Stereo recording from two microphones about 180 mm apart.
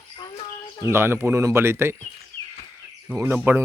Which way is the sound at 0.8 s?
15° right (ahead or behind).